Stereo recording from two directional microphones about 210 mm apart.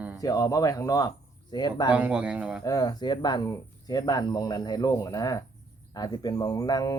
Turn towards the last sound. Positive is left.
turn(degrees=20)  # may be behind; listen again after turning